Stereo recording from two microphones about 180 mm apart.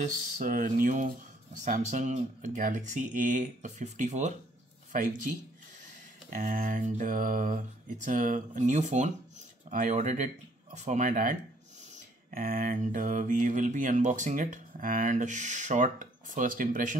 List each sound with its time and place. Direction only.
0.0 s speech: 45° right (ahead or behind)
6.3 s speech: 50° right (ahead or behind)